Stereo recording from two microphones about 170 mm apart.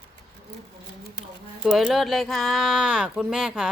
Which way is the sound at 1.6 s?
Centre (ahead or behind).